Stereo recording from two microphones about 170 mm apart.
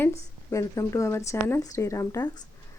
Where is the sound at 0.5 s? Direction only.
20° left (ahead or behind).